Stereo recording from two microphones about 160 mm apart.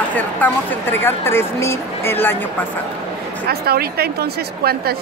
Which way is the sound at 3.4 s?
75° right (ahead or behind).